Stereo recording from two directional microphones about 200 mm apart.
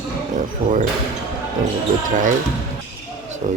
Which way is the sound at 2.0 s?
40° right (ahead or behind).